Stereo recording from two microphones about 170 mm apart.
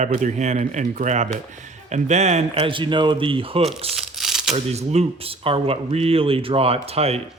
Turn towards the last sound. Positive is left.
turn(degrees=-35)  # may be behind; listen again after turning